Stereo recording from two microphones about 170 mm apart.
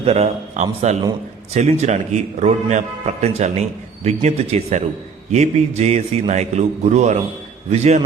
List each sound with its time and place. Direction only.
0.0 s a man's voice: 40° right (ahead or behind)